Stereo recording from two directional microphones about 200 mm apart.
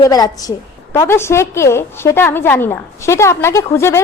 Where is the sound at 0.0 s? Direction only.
20° left (ahead or behind).